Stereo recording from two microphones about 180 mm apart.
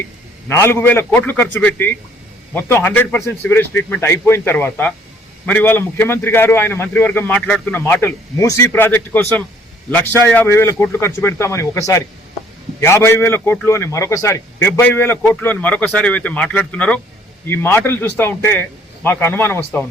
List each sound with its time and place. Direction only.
0.4 s a man's voice: 15° left (ahead or behind)